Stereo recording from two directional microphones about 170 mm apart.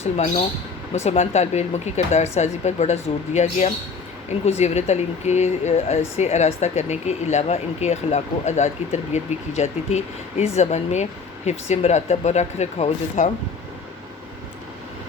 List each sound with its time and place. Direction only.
0.0 s speech: 40° left (ahead or behind)